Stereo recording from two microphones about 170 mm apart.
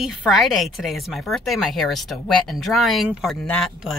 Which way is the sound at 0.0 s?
Centre (ahead or behind).